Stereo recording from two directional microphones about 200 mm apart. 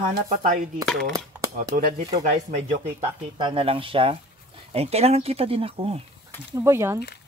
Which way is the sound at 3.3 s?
25° right (ahead or behind).